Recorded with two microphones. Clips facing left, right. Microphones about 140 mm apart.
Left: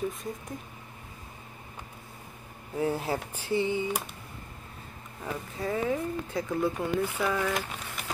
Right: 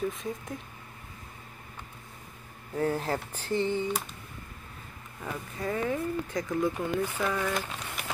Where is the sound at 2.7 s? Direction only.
10° left (ahead or behind).